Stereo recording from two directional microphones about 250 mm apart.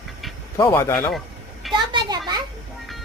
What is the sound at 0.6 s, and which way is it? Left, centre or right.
Speech, centre.